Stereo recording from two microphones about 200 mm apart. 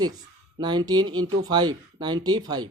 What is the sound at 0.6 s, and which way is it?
Speech, 20° right (ahead or behind).